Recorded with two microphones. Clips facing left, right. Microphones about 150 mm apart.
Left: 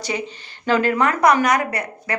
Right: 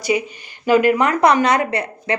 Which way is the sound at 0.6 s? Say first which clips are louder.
Right 4 dB; 10° right (ahead or behind).